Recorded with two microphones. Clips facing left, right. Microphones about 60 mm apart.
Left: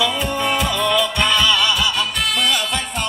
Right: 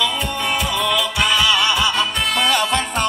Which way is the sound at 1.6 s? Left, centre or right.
Right.